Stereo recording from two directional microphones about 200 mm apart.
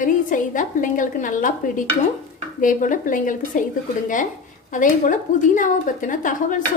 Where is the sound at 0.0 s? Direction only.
40° left (ahead or behind).